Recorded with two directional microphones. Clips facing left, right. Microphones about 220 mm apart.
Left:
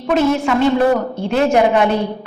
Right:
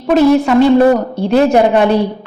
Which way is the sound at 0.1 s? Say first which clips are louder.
Right 6 dB; 35° right (ahead or behind).